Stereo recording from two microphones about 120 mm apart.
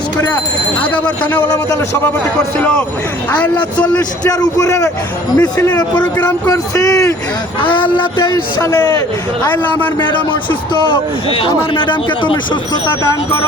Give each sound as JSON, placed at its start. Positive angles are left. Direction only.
{"t": 0.8, "sound": "speech", "side_deg": 10}
{"t": 2.6, "sound": "speech", "side_deg": 10}
{"t": 4.2, "sound": "speech", "side_deg": 30}
{"t": 5.4, "sound": "speech", "side_deg": 15}
{"t": 6.2, "sound": "speech", "side_deg": 25}
{"t": 7.6, "sound": "speech", "side_deg": 45}
{"t": 8.6, "sound": "a man's voice", "side_deg": 30}
{"t": 9.6, "sound": "speech", "side_deg": 15}
{"t": 10.1, "sound": "a man's voice", "side_deg": 40}